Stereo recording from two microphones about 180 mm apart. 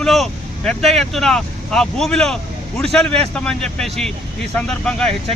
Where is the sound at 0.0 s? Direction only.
Centre (ahead or behind).